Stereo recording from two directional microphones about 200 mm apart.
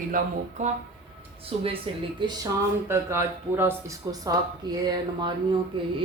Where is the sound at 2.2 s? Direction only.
15° right (ahead or behind).